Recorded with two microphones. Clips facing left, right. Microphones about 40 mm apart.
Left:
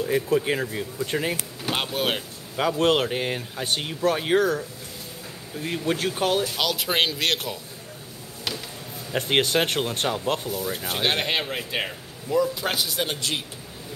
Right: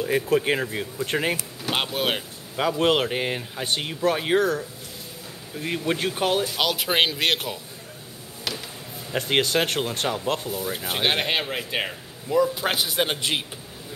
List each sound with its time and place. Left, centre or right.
0.0 s speech: right
1.9 s a man's voice: centre
8.5 s a sound: centre
9.1 s speech: centre; by 13.5 s right